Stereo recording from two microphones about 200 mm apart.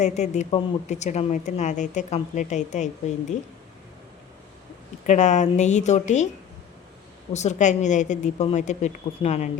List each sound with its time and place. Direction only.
0.0 s speech: 35° left (ahead or behind)
5.0 s speech: 35° left (ahead or behind)
7.3 s speech: 35° left (ahead or behind)